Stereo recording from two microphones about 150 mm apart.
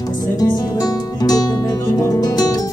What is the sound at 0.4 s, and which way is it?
Music, 25° left (ahead or behind).